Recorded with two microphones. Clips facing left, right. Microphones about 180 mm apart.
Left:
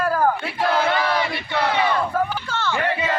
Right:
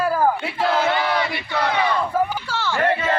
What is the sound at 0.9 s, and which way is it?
Battle cry, 20° right (ahead or behind).